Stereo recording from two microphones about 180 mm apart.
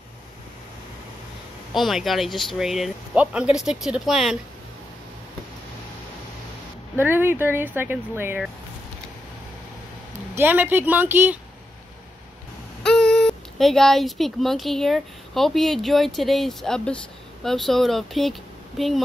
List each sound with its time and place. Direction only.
1.7 s speech: centre (ahead or behind)
7.0 s speech: 10° right (ahead or behind)
10.3 s speech: 10° right (ahead or behind)
12.8 s speech: 5° left (ahead or behind)